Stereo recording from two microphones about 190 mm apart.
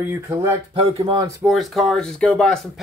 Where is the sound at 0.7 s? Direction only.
30° right (ahead or behind).